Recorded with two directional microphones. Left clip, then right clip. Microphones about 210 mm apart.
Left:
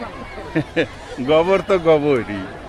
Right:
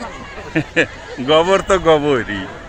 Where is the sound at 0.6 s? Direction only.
20° right (ahead or behind).